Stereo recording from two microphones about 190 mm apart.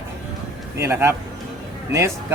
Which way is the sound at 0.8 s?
15° right (ahead or behind).